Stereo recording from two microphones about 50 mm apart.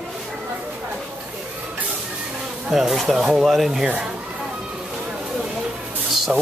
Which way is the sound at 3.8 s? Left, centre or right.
Right.